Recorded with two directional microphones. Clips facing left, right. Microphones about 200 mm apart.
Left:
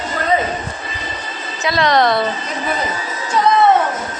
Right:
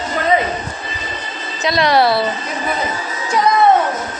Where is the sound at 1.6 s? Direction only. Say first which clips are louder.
Right 1 dB; 10° right (ahead or behind).